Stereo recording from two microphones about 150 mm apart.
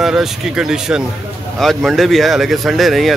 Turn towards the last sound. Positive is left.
turn(degrees=0)  # may be behind; listen again after turning